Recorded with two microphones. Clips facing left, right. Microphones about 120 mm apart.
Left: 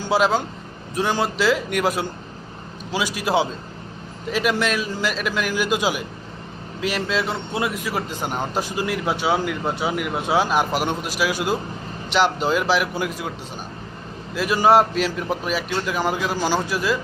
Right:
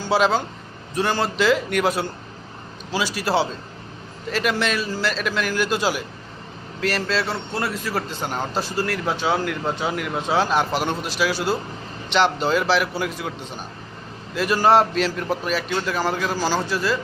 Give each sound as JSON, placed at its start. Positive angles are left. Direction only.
{"t": 0.0, "sound": "a man's voice", "side_deg": 10}
{"t": 14.3, "sound": "a man's voice", "side_deg": 10}